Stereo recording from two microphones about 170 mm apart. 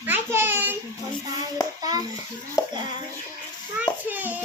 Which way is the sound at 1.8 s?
20° right (ahead or behind).